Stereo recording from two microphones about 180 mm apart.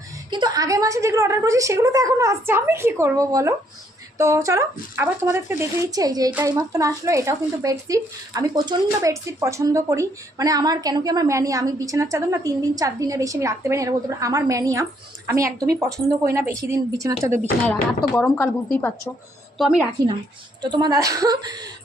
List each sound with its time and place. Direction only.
0.3 s speech: 25° right (ahead or behind)
18.1 s a woman's voice: 10° left (ahead or behind)
19.5 s a woman's voice: centre (ahead or behind)
20.6 s a woman's voice: 25° right (ahead or behind)